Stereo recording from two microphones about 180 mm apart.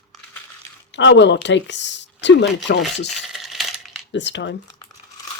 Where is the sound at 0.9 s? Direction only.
85° left.